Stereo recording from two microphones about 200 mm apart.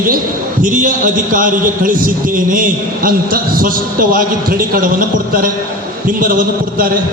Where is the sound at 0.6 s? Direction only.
40° right (ahead or behind).